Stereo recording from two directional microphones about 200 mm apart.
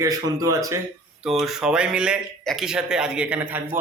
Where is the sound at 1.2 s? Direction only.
Centre (ahead or behind).